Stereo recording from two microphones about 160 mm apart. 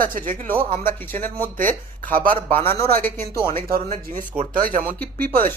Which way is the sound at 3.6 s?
65° right (ahead or behind).